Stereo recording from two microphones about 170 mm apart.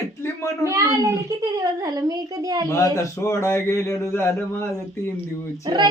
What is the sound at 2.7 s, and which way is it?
Speech, 20° left (ahead or behind).